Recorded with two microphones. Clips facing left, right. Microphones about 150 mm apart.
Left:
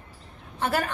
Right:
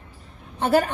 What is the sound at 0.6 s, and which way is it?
Speech, 30° right (ahead or behind).